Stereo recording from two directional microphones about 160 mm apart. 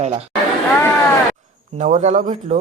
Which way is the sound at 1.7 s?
50° right (ahead or behind).